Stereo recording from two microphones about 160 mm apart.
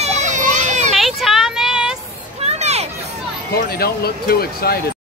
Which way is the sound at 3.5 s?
75° left (ahead or behind).